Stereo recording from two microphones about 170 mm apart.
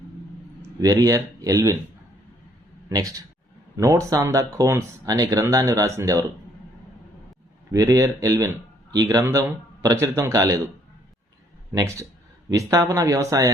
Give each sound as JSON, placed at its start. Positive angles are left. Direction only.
{"t": 0.6, "sound": "speech", "side_deg": -20}
{"t": 2.9, "sound": "speech", "side_deg": -20}
{"t": 7.7, "sound": "speech", "side_deg": -20}
{"t": 11.7, "sound": "speech", "side_deg": -20}